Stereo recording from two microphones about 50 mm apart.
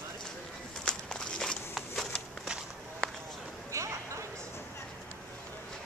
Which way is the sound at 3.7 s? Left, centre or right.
Right.